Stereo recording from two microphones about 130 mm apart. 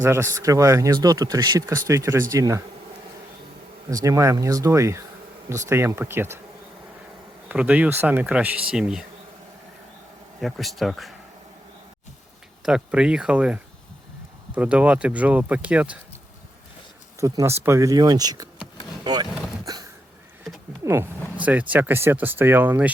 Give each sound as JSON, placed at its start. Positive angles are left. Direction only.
{"t": 0.0, "sound": "speech", "side_deg": -20}
{"t": 3.8, "sound": "speech", "side_deg": -25}
{"t": 7.4, "sound": "speech", "side_deg": -10}
{"t": 10.4, "sound": "speech", "side_deg": 0}
{"t": 12.6, "sound": "speech", "side_deg": -5}
{"t": 17.2, "sound": "speech", "side_deg": -25}
{"t": 19.6, "sound": "a sound", "side_deg": -30}
{"t": 20.8, "sound": "speech", "side_deg": -20}